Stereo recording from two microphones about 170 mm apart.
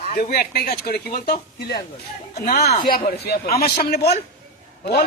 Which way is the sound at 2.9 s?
70° left (ahead or behind).